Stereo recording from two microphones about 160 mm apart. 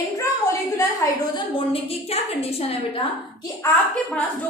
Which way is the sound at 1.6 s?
35° left (ahead or behind).